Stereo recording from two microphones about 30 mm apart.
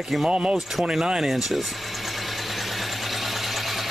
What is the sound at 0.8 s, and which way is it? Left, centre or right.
Vehicle, centre.